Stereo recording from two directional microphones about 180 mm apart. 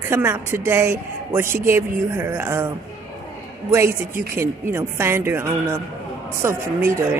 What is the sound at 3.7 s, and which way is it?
A woman's voice, 15° right (ahead or behind).